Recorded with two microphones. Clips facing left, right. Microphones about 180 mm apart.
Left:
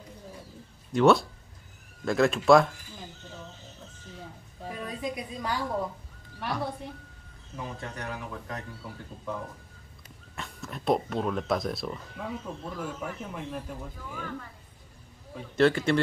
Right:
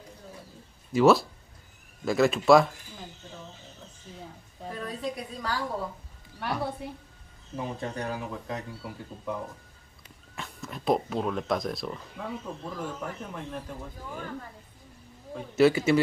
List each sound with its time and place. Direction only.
0.9 s speech: centre (ahead or behind)
4.6 s a sound: 10° left (ahead or behind)
6.4 s speech: 5° right (ahead or behind)
7.5 s speech: 25° right (ahead or behind); by 13.8 s 5° left (ahead or behind)
15.5 s speech: 5° right (ahead or behind)